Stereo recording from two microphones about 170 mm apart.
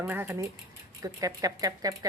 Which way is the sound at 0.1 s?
10° right (ahead or behind).